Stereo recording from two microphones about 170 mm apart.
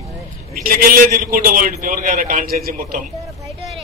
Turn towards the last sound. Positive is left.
turn(degrees=-55)  # may be behind; listen again after turning